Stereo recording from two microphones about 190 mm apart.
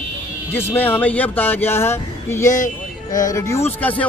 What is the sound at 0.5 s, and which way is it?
Speech, 10° left (ahead or behind).